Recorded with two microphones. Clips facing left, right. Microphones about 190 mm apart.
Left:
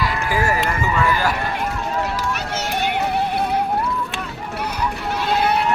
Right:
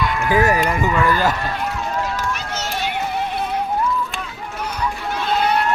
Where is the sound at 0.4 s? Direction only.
20° right (ahead or behind).